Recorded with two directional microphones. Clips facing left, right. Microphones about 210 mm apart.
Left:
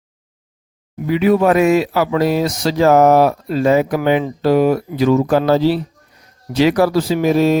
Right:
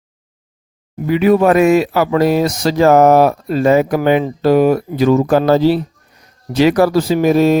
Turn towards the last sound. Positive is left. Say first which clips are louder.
# right 2 dB
turn(degrees=-50)  # may be behind; listen again after turning